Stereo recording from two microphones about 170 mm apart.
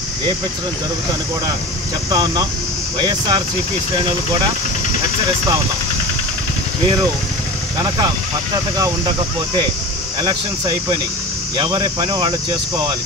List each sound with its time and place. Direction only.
3.0 s speech: 25° right (ahead or behind)
8.7 s speech: 20° right (ahead or behind)
10.2 s speech: 25° right (ahead or behind)